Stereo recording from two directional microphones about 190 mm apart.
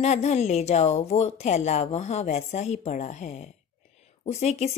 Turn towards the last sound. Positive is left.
turn(degrees=35)  # may be behind; listen again after turning